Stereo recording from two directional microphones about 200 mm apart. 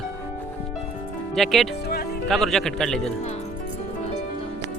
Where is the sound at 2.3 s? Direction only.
Centre (ahead or behind).